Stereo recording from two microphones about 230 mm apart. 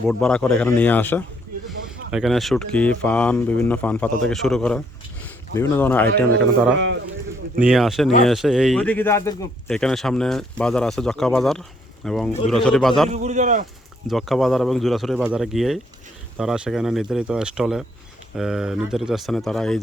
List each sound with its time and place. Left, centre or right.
0.1 s speech: centre
6.7 s speech: right
7.6 s speech: centre
13.1 s a man's voice: right
14.1 s speech: centre